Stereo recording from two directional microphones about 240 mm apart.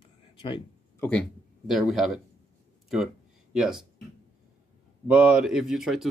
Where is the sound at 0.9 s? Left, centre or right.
Centre.